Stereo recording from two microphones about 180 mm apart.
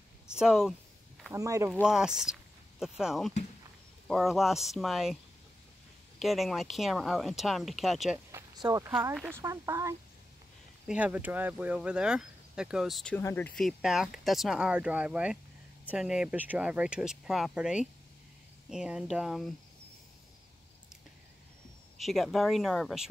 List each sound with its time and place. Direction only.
0.3 s speech: 5° right (ahead or behind)
1.3 s speech: 15° right (ahead or behind)
1.7 s speech: 5° right (ahead or behind)
8.3 s speech: 20° right (ahead or behind); by 13.2 s centre (ahead or behind)
13.2 s speech: 15° left (ahead or behind)
13.6 s speech: centre (ahead or behind)
21.9 s speech: centre (ahead or behind)